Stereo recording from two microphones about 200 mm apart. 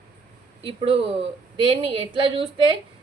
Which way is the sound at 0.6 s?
25° right (ahead or behind).